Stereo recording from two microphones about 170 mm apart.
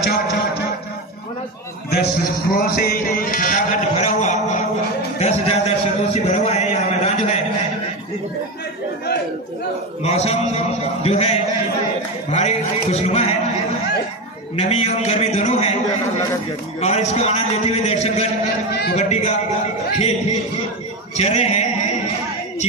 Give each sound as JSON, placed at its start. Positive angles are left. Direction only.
{"t": 0.0, "sound": "music", "side_deg": 70}
{"t": 1.9, "sound": "music", "side_deg": 65}
{"t": 5.2, "sound": "a sound", "side_deg": 35}
{"t": 10.0, "sound": "a sound", "side_deg": 40}
{"t": 12.3, "sound": "a man's voice", "side_deg": 40}
{"t": 14.6, "sound": "a man's voice", "side_deg": 40}